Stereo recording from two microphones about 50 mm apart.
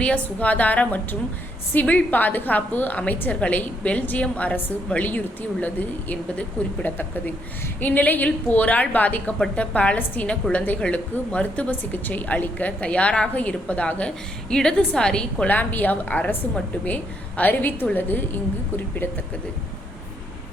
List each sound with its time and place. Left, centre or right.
0.0 s a woman's voice: left
7.8 s a woman's voice: left
14.5 s a woman's voice: centre
15.4 s a woman's voice: left